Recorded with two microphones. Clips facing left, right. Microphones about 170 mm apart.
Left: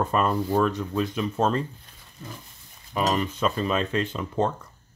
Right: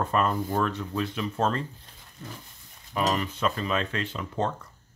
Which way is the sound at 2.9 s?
25° left (ahead or behind).